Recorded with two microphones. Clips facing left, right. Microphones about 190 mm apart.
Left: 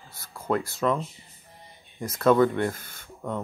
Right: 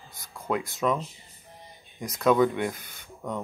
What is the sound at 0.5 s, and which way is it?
Speech, 15° right (ahead or behind).